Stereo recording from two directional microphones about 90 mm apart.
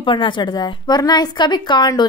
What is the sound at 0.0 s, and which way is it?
A woman's voice, 65° left (ahead or behind).